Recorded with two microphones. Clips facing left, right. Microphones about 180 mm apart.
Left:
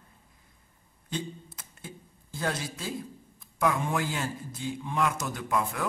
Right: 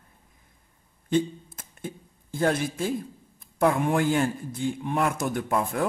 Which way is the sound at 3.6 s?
55° right (ahead or behind).